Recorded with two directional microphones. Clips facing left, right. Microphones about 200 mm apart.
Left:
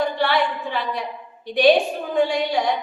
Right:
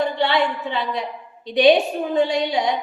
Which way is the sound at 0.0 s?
25° right (ahead or behind).